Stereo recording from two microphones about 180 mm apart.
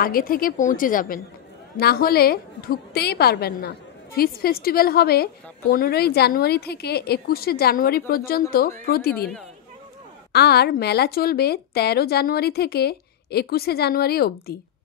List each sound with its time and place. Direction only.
0.0 s a woman's voice: 55° left (ahead or behind)
10.3 s a woman's voice: 65° left (ahead or behind)